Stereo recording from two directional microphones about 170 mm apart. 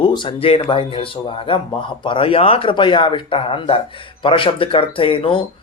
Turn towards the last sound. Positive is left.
turn(degrees=30)  # may be behind; listen again after turning